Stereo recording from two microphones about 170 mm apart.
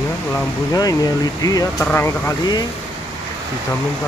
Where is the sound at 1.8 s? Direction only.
10° left (ahead or behind).